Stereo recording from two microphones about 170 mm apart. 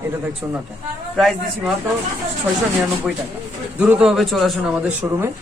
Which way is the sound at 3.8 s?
5° right (ahead or behind).